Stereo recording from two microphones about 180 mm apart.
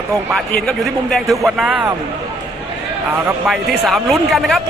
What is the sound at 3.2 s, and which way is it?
Speech, 5° right (ahead or behind).